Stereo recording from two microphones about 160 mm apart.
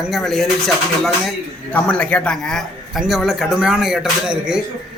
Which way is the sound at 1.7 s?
10° left (ahead or behind).